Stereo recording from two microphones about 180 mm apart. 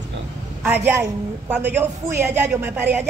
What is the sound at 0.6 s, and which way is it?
A woman's voice, 10° right (ahead or behind).